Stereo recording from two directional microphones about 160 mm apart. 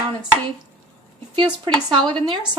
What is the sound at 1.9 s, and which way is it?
Speech, 30° right (ahead or behind).